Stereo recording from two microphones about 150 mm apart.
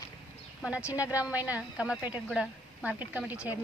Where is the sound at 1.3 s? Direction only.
10° right (ahead or behind).